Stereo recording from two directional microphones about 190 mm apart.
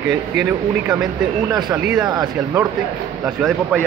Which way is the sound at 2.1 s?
20° right (ahead or behind).